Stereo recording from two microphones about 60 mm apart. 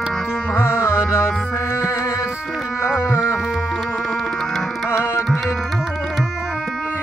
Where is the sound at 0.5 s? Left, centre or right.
Left.